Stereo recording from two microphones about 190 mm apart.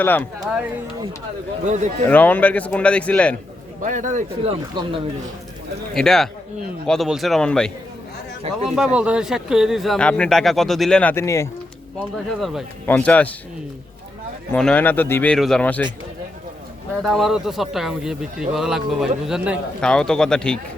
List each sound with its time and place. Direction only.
0.0 s speech: 10° left (ahead or behind)
1.6 s speech: 40° right (ahead or behind)
2.0 s speech: 10° left (ahead or behind)
3.8 s speech: 40° right (ahead or behind)
4.7 s speech: 25° right (ahead or behind)
5.9 s speech: centre (ahead or behind)
8.7 s speech: 5° right (ahead or behind); by 11.4 s 15° left (ahead or behind)
12.8 s speech: 10° left (ahead or behind)
14.5 s speech: 5° left (ahead or behind)
17.0 s speech: centre (ahead or behind)